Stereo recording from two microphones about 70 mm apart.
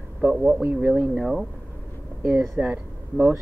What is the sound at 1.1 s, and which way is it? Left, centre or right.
Speech, centre.